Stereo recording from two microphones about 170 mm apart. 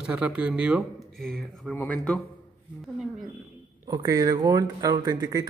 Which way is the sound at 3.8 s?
20° right (ahead or behind).